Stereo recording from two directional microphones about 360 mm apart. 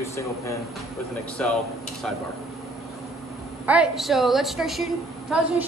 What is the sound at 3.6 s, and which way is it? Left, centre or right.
Speech, centre.